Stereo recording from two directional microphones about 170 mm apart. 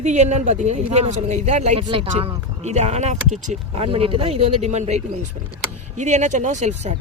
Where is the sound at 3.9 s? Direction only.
35° right (ahead or behind).